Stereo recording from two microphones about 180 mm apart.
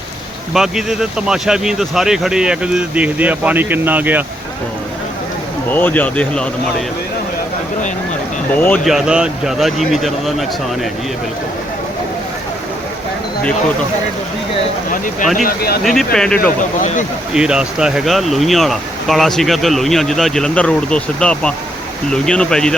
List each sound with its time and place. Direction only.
0.5 s speech: centre (ahead or behind)
5.7 s speech: 10° left (ahead or behind)
8.5 s speech: 10° left (ahead or behind)
15.4 s speech: 60° left (ahead or behind)
15.8 s speech: centre (ahead or behind)
16.8 s speech: 45° left (ahead or behind)
17.3 s speech: 5° right (ahead or behind)